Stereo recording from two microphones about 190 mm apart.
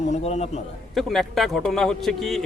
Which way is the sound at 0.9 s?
Centre (ahead or behind).